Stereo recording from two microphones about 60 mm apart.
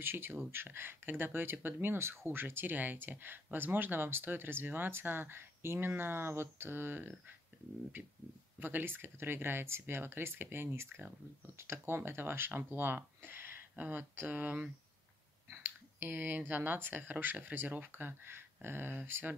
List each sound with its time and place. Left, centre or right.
0.0 s speech: right